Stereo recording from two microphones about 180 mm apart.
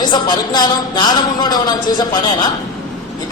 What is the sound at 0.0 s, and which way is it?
Speech, 25° left (ahead or behind).